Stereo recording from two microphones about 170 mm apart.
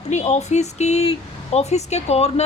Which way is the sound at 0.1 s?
40° left (ahead or behind).